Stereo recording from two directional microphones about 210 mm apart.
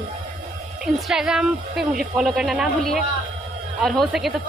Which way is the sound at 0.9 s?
Centre (ahead or behind).